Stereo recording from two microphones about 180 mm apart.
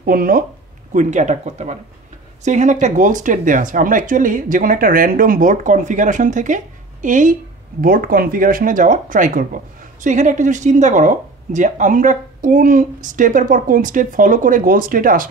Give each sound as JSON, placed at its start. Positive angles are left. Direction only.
{"t": 0.0, "sound": "speech", "side_deg": -55}
{"t": 0.9, "sound": "speech", "side_deg": -40}